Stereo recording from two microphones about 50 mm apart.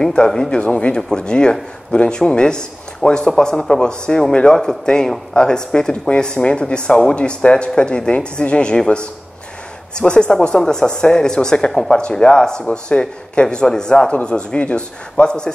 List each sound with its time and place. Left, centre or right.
0.0 s speech: centre